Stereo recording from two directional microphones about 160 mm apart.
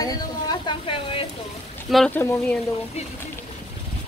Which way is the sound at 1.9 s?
Centre (ahead or behind).